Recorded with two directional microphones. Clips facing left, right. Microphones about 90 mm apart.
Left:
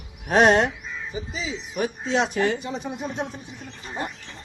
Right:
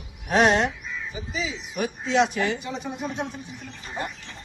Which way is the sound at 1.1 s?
30° left (ahead or behind).